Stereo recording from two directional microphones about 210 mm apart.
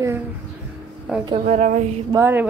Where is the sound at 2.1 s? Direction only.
10° right (ahead or behind).